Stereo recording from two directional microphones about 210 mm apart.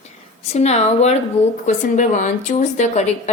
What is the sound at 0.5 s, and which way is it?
A woman's voice, 30° left (ahead or behind).